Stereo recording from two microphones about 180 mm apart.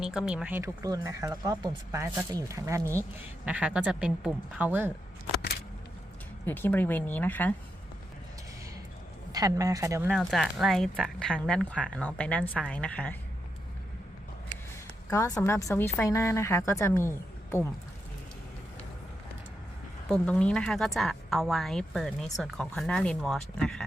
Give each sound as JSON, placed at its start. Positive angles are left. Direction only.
{"t": 0.0, "sound": "speech", "side_deg": -5}
{"t": 6.4, "sound": "a woman's voice", "side_deg": 10}
{"t": 9.3, "sound": "speech", "side_deg": -20}
{"t": 10.1, "sound": "speech", "side_deg": 0}
{"t": 15.1, "sound": "a woman's voice", "side_deg": 15}
{"t": 20.1, "sound": "speech", "side_deg": 5}